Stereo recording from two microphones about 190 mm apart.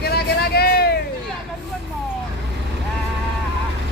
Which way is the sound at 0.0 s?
55° left (ahead or behind).